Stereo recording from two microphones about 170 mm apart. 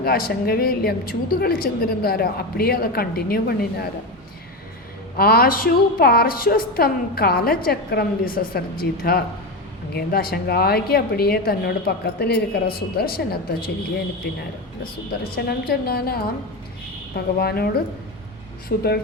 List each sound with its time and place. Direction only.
0.0 s a woman's voice: 60° left (ahead or behind)
5.1 s a woman's voice: 65° left (ahead or behind)
18.7 s a woman's voice: 55° left (ahead or behind)